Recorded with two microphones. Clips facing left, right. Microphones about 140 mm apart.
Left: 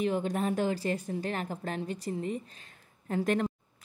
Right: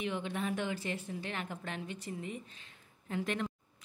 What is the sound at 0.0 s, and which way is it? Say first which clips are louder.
Speech: left 7 dB; 40° left (ahead or behind).